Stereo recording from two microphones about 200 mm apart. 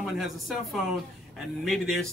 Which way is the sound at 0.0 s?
Centre (ahead or behind).